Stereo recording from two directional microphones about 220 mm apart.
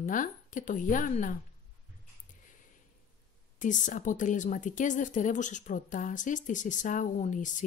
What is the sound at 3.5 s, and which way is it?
A woman's voice, 35° left (ahead or behind).